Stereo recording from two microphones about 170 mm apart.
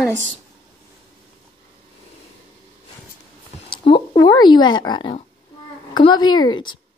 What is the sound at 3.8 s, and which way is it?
Speech, 30° left (ahead or behind).